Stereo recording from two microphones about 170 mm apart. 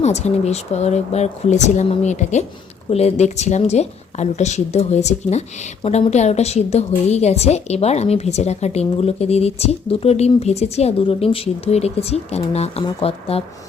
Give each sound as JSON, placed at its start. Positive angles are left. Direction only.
{"t": 0.0, "sound": "a woman's voice", "side_deg": 40}